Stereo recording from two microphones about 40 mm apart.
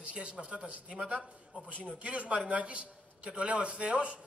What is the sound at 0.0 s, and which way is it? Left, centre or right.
A man's voice, right.